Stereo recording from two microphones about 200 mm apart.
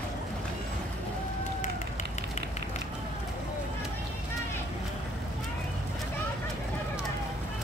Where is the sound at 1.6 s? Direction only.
35° left (ahead or behind).